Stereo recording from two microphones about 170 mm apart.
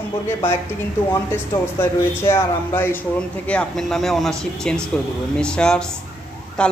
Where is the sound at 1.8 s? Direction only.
15° left (ahead or behind).